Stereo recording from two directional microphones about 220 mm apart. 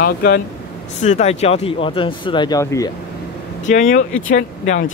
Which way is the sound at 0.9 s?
30° left (ahead or behind).